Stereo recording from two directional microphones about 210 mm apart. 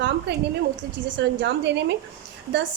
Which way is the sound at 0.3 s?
50° right (ahead or behind).